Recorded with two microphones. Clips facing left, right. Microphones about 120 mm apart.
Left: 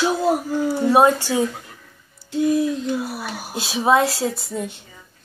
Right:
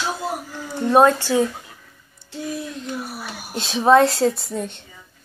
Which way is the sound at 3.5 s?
5° left (ahead or behind).